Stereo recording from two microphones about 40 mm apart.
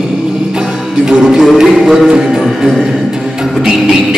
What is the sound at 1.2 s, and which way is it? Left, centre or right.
Music, centre.